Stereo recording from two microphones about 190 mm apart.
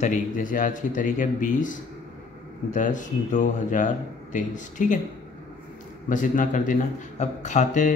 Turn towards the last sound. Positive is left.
turn(degrees=40)  # may be behind; listen again after turning